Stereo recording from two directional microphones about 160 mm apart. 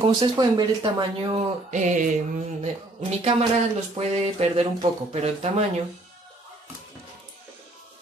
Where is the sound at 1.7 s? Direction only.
50° right (ahead or behind).